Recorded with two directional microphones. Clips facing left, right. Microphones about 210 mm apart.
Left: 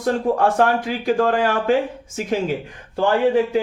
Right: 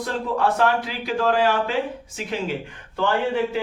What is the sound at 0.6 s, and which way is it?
A man's voice, 50° left (ahead or behind).